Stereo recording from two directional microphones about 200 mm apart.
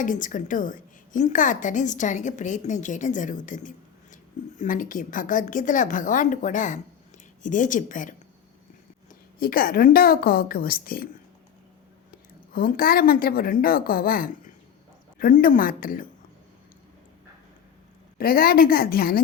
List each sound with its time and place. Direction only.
0.0 s a woman's voice: 40° left (ahead or behind)
9.4 s a woman's voice: 45° left (ahead or behind)
12.5 s a woman's voice: 45° left (ahead or behind)
18.2 s a woman's voice: 50° left (ahead or behind)